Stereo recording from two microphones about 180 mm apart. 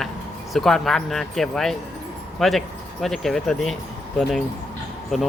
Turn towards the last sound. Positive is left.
turn(degrees=5)  # may be behind; listen again after turning